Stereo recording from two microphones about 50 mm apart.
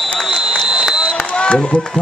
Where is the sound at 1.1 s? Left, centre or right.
Left.